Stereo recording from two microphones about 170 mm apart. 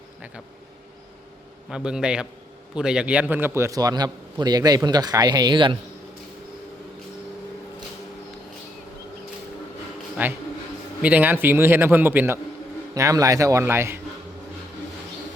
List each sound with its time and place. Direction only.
1.7 s a man's voice: 5° right (ahead or behind); by 5.7 s 25° right (ahead or behind)
10.2 s a man's voice: 10° right (ahead or behind)